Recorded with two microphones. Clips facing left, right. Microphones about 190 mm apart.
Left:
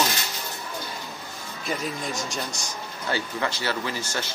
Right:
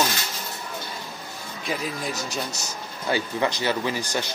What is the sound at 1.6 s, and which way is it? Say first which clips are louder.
Speech: right 1 dB; centre (ahead or behind).